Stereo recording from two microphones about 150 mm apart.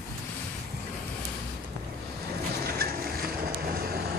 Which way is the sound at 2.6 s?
85° right.